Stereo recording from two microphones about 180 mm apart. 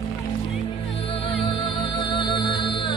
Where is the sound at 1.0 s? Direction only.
30° left (ahead or behind).